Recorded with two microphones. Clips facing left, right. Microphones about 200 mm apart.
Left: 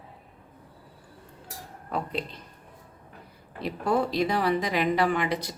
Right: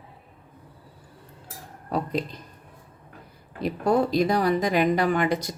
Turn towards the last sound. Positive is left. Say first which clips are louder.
# right 3 dB
turn(degrees=-45)  # may be behind; listen again after turning